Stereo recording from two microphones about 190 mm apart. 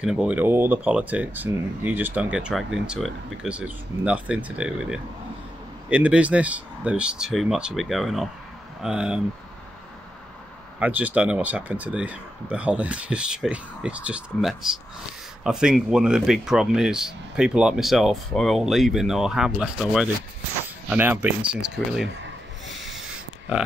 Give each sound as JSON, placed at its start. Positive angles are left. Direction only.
{"t": 0.0, "sound": "speech", "side_deg": -5}
{"t": 10.8, "sound": "speech", "side_deg": -10}
{"t": 22.8, "sound": "owl", "side_deg": 0}